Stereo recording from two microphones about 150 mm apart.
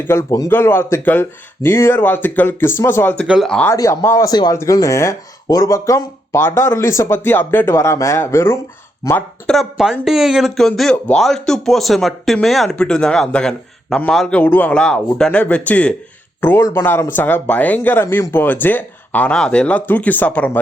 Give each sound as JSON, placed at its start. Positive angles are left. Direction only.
{"t": 0.0, "sound": "speech", "side_deg": 20}
{"t": 3.2, "sound": "speech", "side_deg": 0}
{"t": 3.7, "sound": "speech", "side_deg": 20}
{"t": 9.6, "sound": "speech", "side_deg": 0}